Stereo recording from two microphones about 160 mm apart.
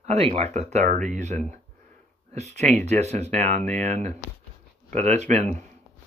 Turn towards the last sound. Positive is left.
turn(degrees=-45)  # may be behind; listen again after turning